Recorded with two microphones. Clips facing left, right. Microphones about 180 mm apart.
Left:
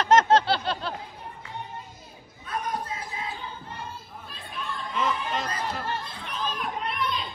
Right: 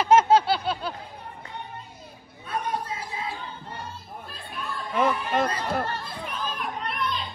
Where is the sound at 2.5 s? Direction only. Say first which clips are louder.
Right 2 dB; 30° right (ahead or behind).